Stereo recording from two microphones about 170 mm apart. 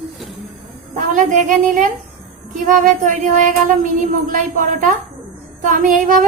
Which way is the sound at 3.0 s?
50° right (ahead or behind).